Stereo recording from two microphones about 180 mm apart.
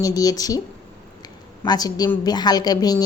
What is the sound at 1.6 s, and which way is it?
Speech, 20° left (ahead or behind).